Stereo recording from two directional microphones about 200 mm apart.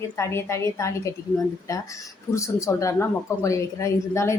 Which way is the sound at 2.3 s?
15° left (ahead or behind).